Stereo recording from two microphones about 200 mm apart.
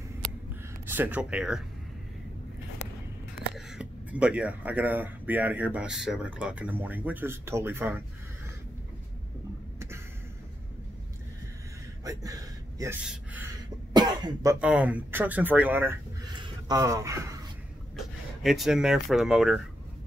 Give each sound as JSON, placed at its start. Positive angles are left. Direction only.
{"t": 0.8, "sound": "speech", "side_deg": -10}
{"t": 3.5, "sound": "speech", "side_deg": -5}
{"t": 12.0, "sound": "a sound", "side_deg": -15}
{"t": 13.0, "sound": "speech", "side_deg": -5}
{"t": 13.9, "sound": "speech", "side_deg": -20}
{"t": 16.3, "sound": "speech", "side_deg": -20}
{"t": 17.9, "sound": "speech", "side_deg": 0}